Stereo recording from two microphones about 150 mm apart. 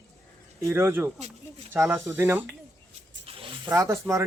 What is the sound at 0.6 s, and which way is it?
Speech, 15° right (ahead or behind).